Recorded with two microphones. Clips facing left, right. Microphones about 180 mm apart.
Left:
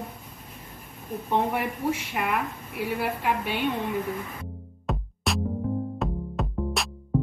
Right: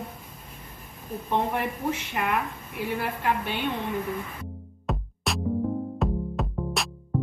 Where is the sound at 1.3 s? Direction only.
5° left (ahead or behind).